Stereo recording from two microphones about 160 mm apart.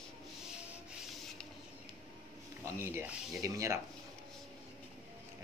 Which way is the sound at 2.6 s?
15° right (ahead or behind).